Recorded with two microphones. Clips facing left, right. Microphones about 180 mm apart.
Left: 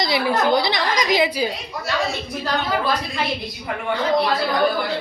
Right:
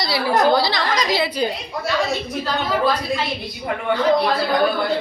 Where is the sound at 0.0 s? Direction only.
20° left (ahead or behind).